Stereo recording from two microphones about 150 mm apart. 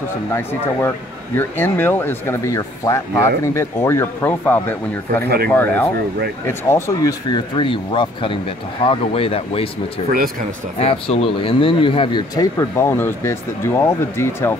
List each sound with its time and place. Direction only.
0.3 s speech: 15° left (ahead or behind); by 9.7 s 40° left (ahead or behind)
10.8 s speech: 40° left (ahead or behind); by 14.6 s 15° left (ahead or behind)